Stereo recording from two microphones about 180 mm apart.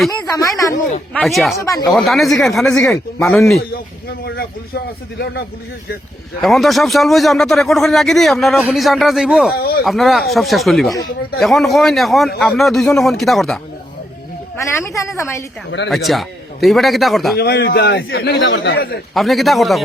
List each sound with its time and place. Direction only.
0.1 s speech: 20° left (ahead or behind)
1.1 s speech: centre (ahead or behind)
1.5 s speech: 20° left (ahead or behind)
1.9 s speech: centre (ahead or behind)
4.2 s a man's voice: 60° left (ahead or behind)
6.4 s speech: centre (ahead or behind)
9.6 s a man's voice: 60° left (ahead or behind)
9.8 s speech: centre (ahead or behind)
14.5 s a woman's voice: 15° left (ahead or behind)
15.9 s speech: centre (ahead or behind)
17.3 s a man's voice: 65° left (ahead or behind)
19.1 s speech: centre (ahead or behind)